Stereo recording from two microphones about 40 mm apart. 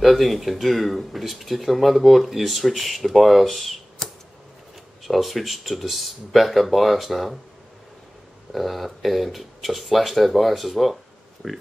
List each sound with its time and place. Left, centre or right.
0.0 s speech: centre
8.5 s speech: centre